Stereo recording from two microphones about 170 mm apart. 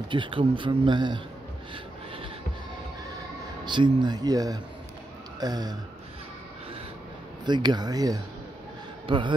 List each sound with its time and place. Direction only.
0.1 s speech: 30° right (ahead or behind)
3.6 s speech: 25° right (ahead or behind)
7.4 s a man's voice: 25° right (ahead or behind)